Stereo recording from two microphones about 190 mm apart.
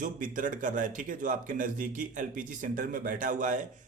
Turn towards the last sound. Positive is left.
turn(degrees=-45)  # may be behind; listen again after turning